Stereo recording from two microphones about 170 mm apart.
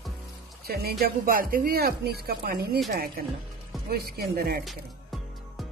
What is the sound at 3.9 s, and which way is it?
Speech, 65° right (ahead or behind).